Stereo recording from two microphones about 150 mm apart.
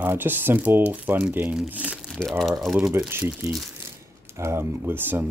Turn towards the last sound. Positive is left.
turn(degrees=-15)  # may be behind; listen again after turning